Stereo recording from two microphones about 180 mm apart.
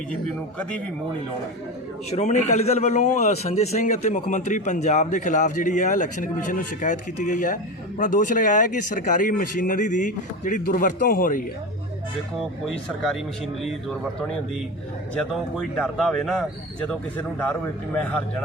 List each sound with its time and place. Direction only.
2.0 s a man's voice: 35° left (ahead or behind)
12.6 s speech: centre (ahead or behind)
15.1 s speech: 5° left (ahead or behind)